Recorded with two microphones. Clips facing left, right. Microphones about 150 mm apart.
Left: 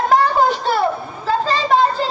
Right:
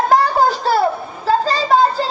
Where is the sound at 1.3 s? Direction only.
35° right (ahead or behind).